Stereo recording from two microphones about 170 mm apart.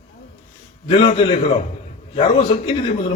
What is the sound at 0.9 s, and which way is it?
A man's voice, 30° left (ahead or behind).